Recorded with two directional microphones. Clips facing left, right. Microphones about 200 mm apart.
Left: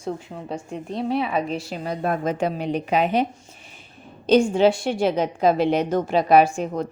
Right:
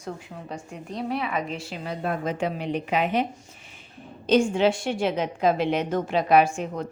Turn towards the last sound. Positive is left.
turn(degrees=35)  # may be behind; listen again after turning